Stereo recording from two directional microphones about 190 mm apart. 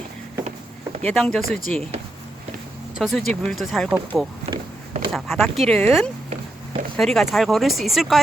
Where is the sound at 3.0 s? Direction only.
Centre (ahead or behind).